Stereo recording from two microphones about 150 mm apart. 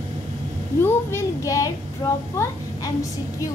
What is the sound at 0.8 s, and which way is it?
A child's voice, 20° left (ahead or behind).